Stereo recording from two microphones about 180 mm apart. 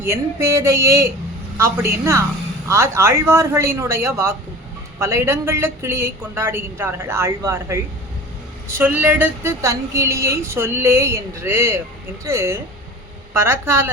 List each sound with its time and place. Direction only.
0.0 s a woman's voice: 15° right (ahead or behind)